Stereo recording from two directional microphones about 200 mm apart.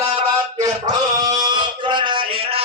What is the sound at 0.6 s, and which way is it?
Male singing, 20° right (ahead or behind).